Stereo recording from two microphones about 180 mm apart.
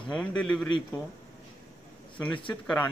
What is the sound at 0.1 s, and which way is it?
Speech, 5° left (ahead or behind).